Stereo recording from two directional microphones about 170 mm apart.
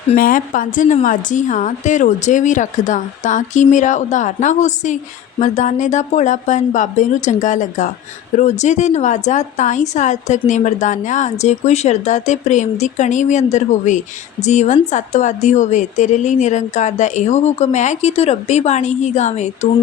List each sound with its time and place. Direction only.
0.2 s a woman's voice: 55° left (ahead or behind)